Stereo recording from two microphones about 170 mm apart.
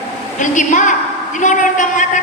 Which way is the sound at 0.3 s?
45° left (ahead or behind).